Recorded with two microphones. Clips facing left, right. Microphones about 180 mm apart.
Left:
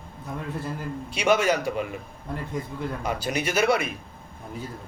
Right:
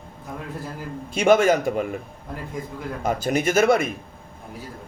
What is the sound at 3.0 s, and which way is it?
Speech, 45° right (ahead or behind).